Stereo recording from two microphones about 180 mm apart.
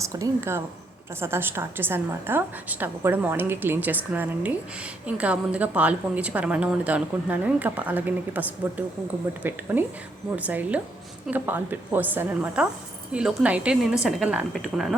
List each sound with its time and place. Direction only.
0.0 s a woman's voice: 15° right (ahead or behind); by 14.9 s centre (ahead or behind)